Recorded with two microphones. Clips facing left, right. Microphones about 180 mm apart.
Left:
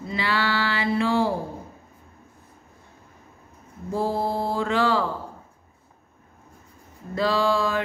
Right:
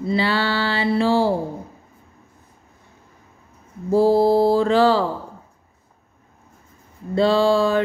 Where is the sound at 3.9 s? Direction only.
35° right (ahead or behind).